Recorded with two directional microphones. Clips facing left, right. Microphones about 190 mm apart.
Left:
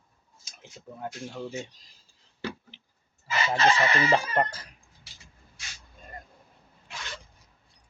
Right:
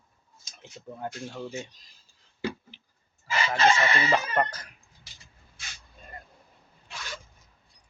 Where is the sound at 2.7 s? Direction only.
25° left (ahead or behind).